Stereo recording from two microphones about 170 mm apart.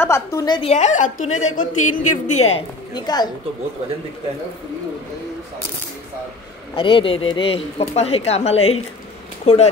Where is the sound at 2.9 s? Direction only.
25° left (ahead or behind).